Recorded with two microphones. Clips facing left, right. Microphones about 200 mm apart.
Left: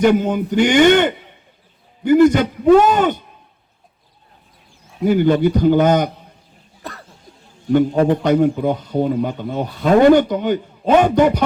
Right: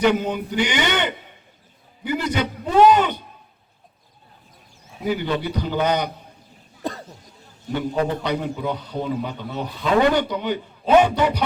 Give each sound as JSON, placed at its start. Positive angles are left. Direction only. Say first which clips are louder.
{"t": 0.0, "sound": "speech", "louder": "left 5 dB", "side_deg": 45}
{"t": 5.0, "sound": "speech", "louder": "left 9 dB", "side_deg": 50}
{"t": 7.7, "sound": "speech", "louder": "left 9 dB", "side_deg": 50}